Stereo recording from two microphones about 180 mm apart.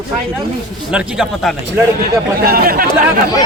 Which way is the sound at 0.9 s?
5° right (ahead or behind).